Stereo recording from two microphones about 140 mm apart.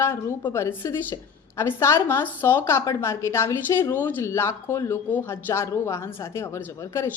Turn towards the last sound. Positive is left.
turn(degrees=15)  # may be behind; listen again after turning